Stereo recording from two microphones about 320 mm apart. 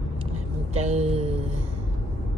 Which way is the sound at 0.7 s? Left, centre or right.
Centre.